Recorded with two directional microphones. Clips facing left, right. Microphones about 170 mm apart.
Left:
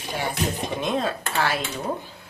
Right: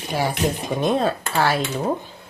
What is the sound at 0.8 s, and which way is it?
Speech, 40° right (ahead or behind).